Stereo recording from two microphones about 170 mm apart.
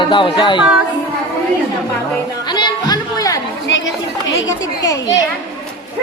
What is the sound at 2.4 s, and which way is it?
Chatter, 25° left (ahead or behind).